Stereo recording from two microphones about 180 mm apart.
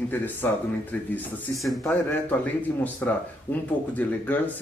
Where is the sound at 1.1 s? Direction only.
Centre (ahead or behind).